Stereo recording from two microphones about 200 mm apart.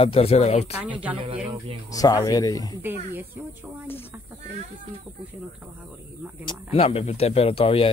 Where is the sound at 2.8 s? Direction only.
10° right (ahead or behind).